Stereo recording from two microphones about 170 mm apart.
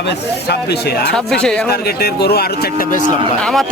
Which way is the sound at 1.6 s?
70° left (ahead or behind).